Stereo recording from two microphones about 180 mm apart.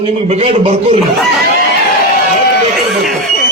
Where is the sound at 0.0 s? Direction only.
35° right (ahead or behind).